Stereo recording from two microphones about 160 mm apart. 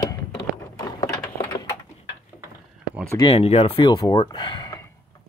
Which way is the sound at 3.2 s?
40° left (ahead or behind).